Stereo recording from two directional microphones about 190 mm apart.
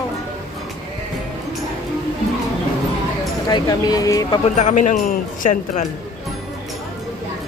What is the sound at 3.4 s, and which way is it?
Speech, 20° left (ahead or behind).